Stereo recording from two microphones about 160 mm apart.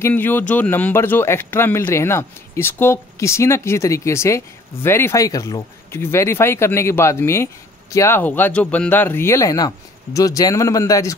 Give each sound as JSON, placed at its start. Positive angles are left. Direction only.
{"t": 0.0, "sound": "speech", "side_deg": 15}